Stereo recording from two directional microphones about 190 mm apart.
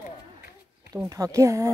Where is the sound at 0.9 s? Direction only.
20° right (ahead or behind).